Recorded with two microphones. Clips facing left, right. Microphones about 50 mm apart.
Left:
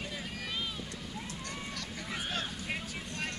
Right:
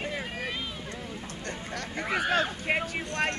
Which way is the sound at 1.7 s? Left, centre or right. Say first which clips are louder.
Right 8 dB; right.